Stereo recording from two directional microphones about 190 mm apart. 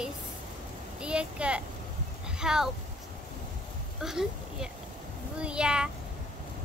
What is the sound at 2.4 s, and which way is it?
Speech, 5° right (ahead or behind).